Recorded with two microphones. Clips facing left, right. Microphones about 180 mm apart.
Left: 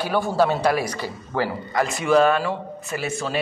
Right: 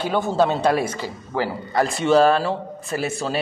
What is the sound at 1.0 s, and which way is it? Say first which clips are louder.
Speech: even; 15° right (ahead or behind).